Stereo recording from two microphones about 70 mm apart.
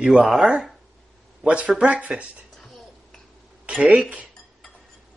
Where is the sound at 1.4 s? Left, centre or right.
Centre.